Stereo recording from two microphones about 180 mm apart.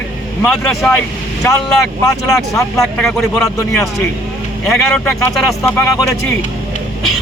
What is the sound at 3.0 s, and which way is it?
A man's voice, 5° left (ahead or behind).